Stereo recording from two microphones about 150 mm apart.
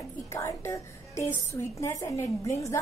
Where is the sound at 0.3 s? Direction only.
20° left (ahead or behind).